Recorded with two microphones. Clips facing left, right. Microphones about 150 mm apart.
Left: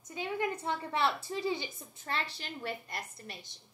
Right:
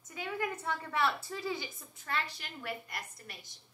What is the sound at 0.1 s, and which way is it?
A woman's voice, 25° left (ahead or behind).